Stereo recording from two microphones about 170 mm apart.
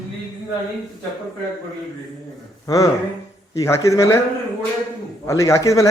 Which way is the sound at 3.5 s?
15° left (ahead or behind).